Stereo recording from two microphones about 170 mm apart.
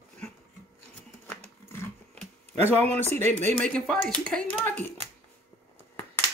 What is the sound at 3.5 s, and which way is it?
Speech, 5° left (ahead or behind).